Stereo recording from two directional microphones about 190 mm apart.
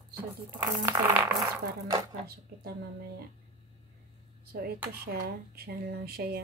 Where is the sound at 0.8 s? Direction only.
15° right (ahead or behind).